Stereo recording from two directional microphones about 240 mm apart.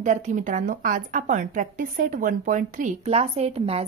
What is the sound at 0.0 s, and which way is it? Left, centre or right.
A woman's voice, right.